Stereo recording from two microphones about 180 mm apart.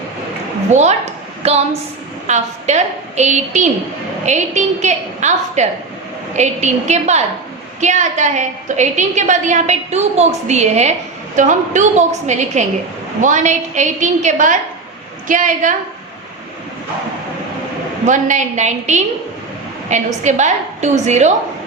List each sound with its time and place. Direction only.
0.7 s a woman's voice: 40° right (ahead or behind)
18.0 s a woman's voice: 40° right (ahead or behind)